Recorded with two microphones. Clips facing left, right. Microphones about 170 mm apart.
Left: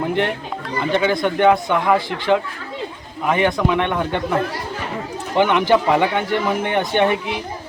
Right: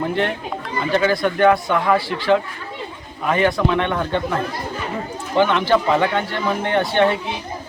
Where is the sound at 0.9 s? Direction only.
20° left (ahead or behind).